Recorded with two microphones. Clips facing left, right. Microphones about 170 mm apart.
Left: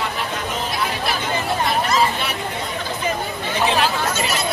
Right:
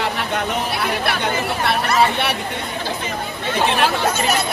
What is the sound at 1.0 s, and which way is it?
Chatter, 65° right (ahead or behind).